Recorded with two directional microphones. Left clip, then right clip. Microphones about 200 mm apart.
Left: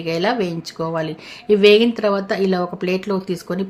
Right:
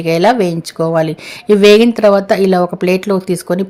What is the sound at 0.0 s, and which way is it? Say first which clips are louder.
Speech: right 9 dB; 40° right (ahead or behind).